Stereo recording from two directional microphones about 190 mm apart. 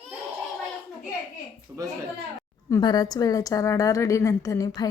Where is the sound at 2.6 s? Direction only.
20° left (ahead or behind).